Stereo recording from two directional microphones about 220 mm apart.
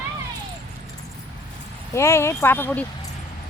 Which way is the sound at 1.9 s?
10° left (ahead or behind).